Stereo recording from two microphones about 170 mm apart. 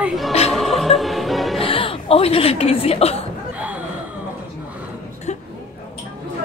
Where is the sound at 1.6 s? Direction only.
35° left (ahead or behind).